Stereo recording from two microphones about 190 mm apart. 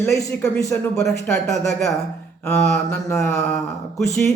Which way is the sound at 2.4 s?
5° left (ahead or behind).